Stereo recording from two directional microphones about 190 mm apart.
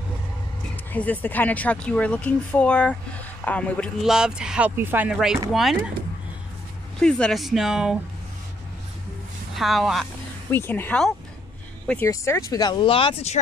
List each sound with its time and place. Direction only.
0.9 s speech: 10° left (ahead or behind)
7.0 s speech: 5° left (ahead or behind)
9.6 s speech: centre (ahead or behind)
10.5 s speech: 10° left (ahead or behind); by 13.4 s 30° left (ahead or behind)